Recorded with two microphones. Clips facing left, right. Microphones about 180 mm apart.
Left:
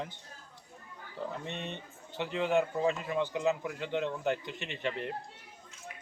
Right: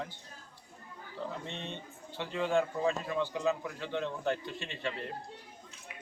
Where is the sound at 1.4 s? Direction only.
15° left (ahead or behind).